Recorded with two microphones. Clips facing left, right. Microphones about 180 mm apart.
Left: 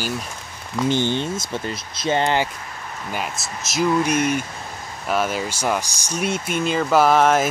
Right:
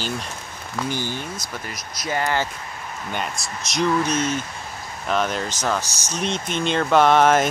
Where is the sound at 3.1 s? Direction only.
5° left (ahead or behind).